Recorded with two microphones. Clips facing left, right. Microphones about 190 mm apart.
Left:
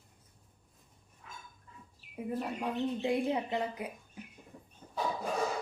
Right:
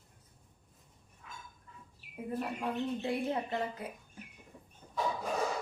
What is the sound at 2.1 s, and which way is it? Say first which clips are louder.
Speech: left 1 dB; 15° left (ahead or behind).